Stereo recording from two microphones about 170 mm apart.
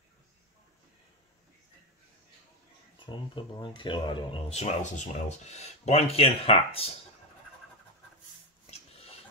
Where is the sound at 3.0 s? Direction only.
30° left (ahead or behind).